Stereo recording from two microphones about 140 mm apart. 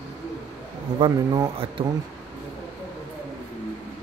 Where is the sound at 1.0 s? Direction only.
30° right (ahead or behind).